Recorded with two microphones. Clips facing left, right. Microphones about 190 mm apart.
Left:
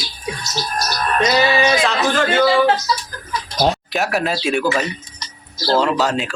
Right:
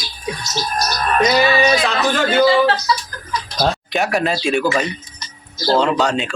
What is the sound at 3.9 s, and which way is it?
Speech, centre (ahead or behind).